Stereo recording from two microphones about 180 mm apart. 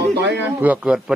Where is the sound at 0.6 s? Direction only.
5° right (ahead or behind).